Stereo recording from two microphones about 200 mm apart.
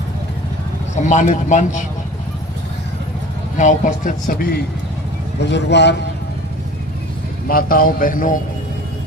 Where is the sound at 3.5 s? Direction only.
40° left (ahead or behind).